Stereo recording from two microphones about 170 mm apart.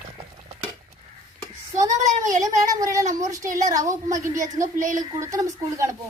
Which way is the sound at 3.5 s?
45° right (ahead or behind).